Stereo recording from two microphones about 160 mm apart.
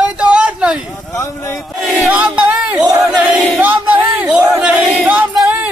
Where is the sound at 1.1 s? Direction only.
20° left (ahead or behind).